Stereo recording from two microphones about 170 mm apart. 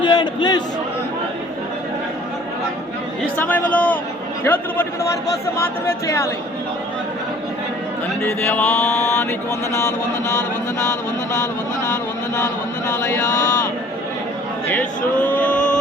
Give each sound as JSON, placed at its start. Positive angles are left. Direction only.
{"t": 0.1, "sound": "a man's voice", "side_deg": 25}
{"t": 3.3, "sound": "speech", "side_deg": 10}
{"t": 8.2, "sound": "speech", "side_deg": 15}
{"t": 8.7, "sound": "mantra", "side_deg": 40}
{"t": 13.1, "sound": "speech", "side_deg": 20}
{"t": 15.3, "sound": "singing", "side_deg": 5}